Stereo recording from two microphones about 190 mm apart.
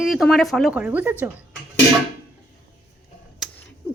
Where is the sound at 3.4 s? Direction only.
Centre (ahead or behind).